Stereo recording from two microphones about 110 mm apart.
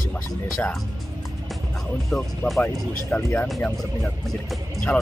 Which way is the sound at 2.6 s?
15° left (ahead or behind).